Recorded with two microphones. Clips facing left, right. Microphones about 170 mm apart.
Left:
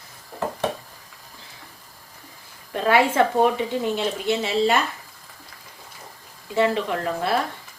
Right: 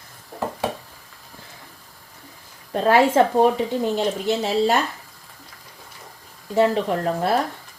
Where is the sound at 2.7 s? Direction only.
40° right (ahead or behind).